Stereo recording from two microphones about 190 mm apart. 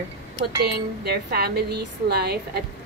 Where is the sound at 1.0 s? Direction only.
55° right (ahead or behind).